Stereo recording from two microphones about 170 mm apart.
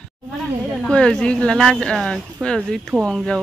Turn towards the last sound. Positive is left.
turn(degrees=5)  # may be behind; listen again after turning